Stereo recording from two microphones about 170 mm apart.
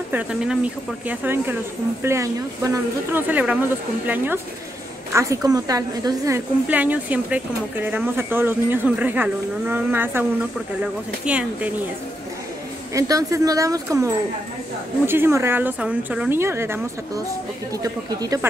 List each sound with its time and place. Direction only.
0.1 s a woman's voice: 5° right (ahead or behind)
11.2 s a woman's voice: 5° right (ahead or behind)
12.9 s a woman's voice: 20° right (ahead or behind)
17.8 s speech: 20° right (ahead or behind)